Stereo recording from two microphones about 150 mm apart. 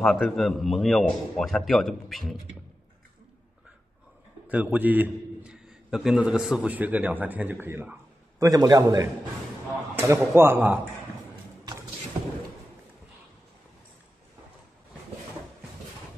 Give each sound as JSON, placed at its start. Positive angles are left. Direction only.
{"t": 0.0, "sound": "a man's voice", "side_deg": 0}
{"t": 4.5, "sound": "a man's voice", "side_deg": -10}